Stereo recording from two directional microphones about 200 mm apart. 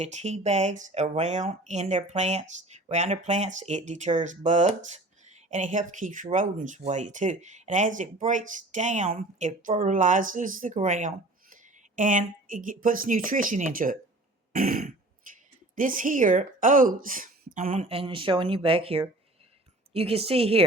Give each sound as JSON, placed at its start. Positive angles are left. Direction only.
{"t": 0.0, "sound": "speech", "side_deg": -35}
{"t": 14.5, "sound": "throat clearing", "side_deg": -45}
{"t": 15.3, "sound": "a woman's voice", "side_deg": -40}